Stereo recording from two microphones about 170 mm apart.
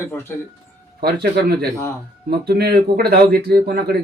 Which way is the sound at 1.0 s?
70° right (ahead or behind).